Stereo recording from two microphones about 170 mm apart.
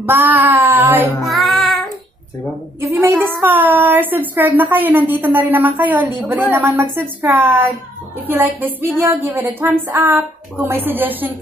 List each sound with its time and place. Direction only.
0.0 s a woman's voice: 10° right (ahead or behind)
1.2 s child singing: centre (ahead or behind)
2.9 s a woman's voice: 15° right (ahead or behind)